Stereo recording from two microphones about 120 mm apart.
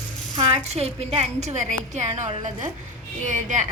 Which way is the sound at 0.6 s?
60° right (ahead or behind).